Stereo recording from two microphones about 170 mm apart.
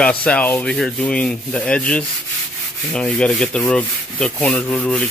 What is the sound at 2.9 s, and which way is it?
Rub, 5° left (ahead or behind).